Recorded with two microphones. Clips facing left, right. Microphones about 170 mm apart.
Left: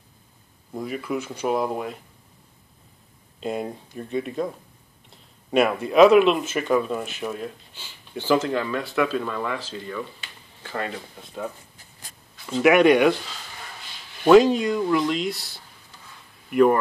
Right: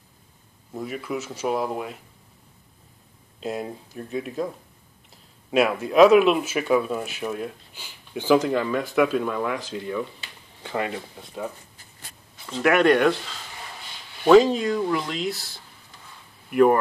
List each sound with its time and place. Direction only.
0.7 s speech: centre (ahead or behind)
3.3 s speech: centre (ahead or behind)
10.9 s speech: 5° right (ahead or behind)
14.2 s speech: 5° left (ahead or behind)